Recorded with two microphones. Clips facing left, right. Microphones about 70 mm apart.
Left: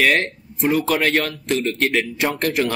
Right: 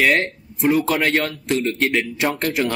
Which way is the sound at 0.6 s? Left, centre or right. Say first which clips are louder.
Right 1 dB; centre.